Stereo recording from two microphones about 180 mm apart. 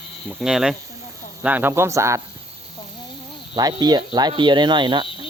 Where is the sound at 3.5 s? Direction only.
20° right (ahead or behind).